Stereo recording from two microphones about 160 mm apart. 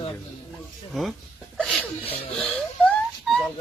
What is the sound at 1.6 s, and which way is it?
Sneeze, centre (ahead or behind).